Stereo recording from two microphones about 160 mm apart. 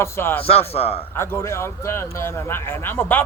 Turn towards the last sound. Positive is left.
turn(degrees=15)  # may be behind; listen again after turning